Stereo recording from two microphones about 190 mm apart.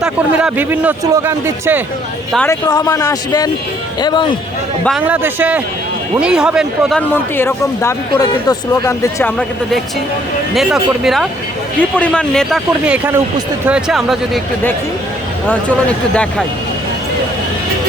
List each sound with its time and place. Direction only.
0.0 s a man's voice: 5° right (ahead or behind)
2.5 s speech: 20° left (ahead or behind)
4.9 s a man's voice: 5° right (ahead or behind)
7.1 s speech: 10° left (ahead or behind)
16.1 s speech: 5° left (ahead or behind)